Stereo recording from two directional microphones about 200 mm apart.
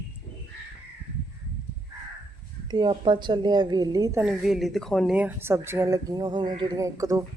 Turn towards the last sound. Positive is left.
turn(degrees=-15)  # may be behind; listen again after turning